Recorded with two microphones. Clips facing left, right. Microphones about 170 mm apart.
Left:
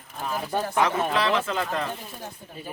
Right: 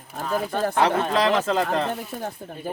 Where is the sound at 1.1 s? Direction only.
40° right (ahead or behind).